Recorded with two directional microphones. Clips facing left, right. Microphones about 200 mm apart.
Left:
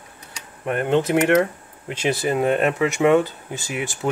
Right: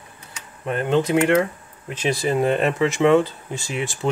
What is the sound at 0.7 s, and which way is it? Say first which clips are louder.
Speech: even; 10° left (ahead or behind).